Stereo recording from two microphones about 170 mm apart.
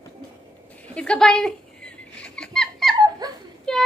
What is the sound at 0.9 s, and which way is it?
Rodents, 5° left (ahead or behind).